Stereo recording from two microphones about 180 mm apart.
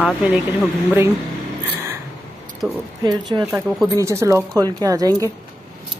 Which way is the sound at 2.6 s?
15° right (ahead or behind).